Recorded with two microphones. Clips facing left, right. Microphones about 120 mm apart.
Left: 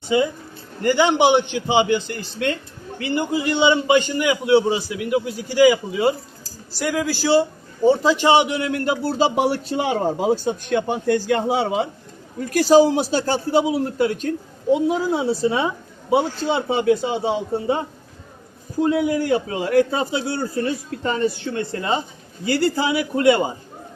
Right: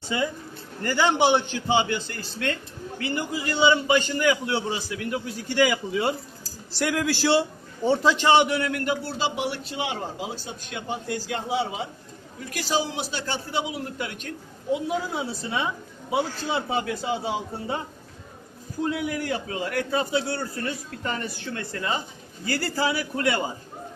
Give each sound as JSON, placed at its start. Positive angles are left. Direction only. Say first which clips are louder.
{"t": 0.1, "sound": "a man's voice", "louder": "left 8 dB", "side_deg": 20}
{"t": 8.8, "sound": "a man's voice", "louder": "left 7 dB", "side_deg": 40}
{"t": 12.4, "sound": "a man's voice", "louder": "left 13 dB", "side_deg": 45}
{"t": 18.8, "sound": "a man's voice", "louder": "left 8 dB", "side_deg": 30}